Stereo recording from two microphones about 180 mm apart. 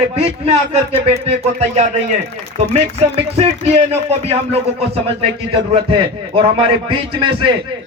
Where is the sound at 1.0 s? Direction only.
35° right (ahead or behind).